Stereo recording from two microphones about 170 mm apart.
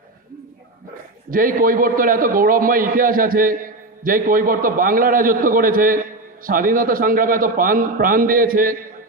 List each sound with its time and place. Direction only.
1.3 s a man's voice: 55° right (ahead or behind)